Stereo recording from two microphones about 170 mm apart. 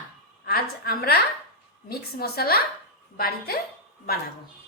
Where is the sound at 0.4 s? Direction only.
65° left (ahead or behind).